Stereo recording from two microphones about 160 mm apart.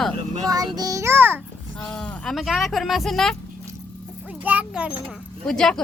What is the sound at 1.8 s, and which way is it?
Speech, 5° left (ahead or behind).